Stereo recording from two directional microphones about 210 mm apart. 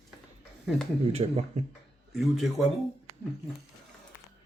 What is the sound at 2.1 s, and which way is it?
Speech, centre (ahead or behind).